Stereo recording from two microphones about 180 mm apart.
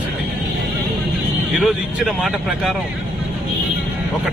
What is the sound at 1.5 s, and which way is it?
Speech, centre (ahead or behind).